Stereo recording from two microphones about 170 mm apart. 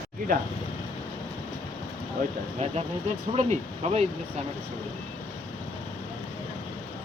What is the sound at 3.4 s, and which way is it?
Speech, 40° right (ahead or behind).